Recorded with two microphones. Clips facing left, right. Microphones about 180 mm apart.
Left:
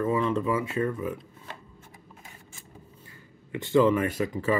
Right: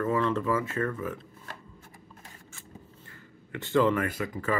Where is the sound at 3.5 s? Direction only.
15° left (ahead or behind).